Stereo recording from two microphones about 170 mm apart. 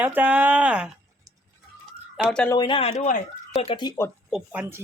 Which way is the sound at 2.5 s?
30° left (ahead or behind).